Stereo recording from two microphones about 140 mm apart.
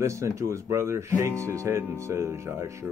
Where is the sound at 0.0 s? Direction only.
20° right (ahead or behind).